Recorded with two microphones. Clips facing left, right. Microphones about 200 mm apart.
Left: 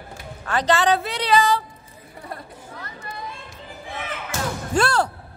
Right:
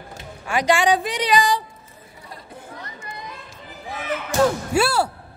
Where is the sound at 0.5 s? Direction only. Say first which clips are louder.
Right 1 dB; 10° right (ahead or behind).